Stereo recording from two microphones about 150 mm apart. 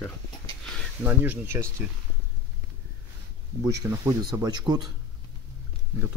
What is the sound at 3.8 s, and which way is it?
Speech, 20° right (ahead or behind).